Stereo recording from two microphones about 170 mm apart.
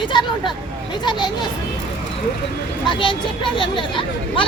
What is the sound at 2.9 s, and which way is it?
Speech, 30° left (ahead or behind).